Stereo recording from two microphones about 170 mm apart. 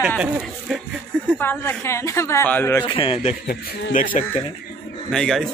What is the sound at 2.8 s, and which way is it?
Speech, 30° left (ahead or behind).